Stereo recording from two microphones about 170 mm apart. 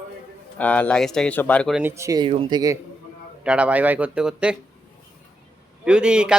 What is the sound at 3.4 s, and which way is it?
A man's voice, 5° right (ahead or behind).